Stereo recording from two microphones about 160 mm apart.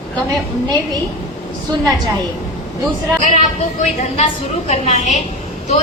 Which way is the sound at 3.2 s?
55° left (ahead or behind).